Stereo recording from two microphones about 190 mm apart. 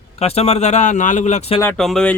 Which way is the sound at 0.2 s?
30° left (ahead or behind).